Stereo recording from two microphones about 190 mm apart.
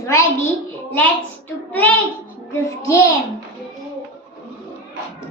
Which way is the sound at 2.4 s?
15° left (ahead or behind).